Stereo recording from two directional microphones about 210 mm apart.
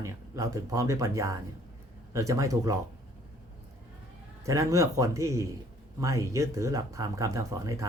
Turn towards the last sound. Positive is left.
turn(degrees=-15)  # may be behind; listen again after turning